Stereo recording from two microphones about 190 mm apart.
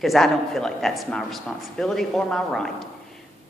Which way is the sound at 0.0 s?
Centre (ahead or behind).